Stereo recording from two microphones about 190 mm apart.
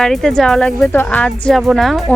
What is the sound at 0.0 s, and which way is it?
Speech, centre (ahead or behind).